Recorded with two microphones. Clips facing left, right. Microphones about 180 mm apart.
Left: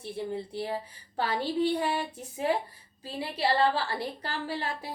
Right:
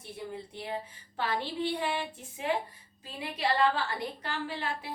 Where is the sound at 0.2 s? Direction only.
30° left (ahead or behind).